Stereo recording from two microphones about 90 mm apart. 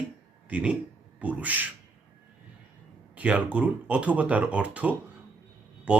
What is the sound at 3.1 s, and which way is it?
Speech, 15° right (ahead or behind).